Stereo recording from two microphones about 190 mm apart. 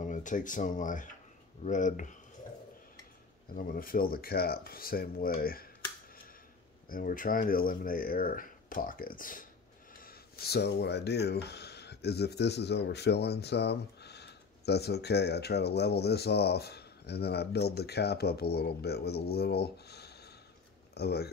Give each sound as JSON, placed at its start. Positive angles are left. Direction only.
{"t": 0.0, "sound": "speech", "side_deg": 40}
{"t": 3.5, "sound": "speech", "side_deg": 50}
{"t": 6.9, "sound": "speech", "side_deg": 50}